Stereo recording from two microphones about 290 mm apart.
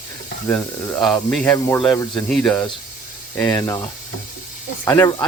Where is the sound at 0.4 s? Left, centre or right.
Centre.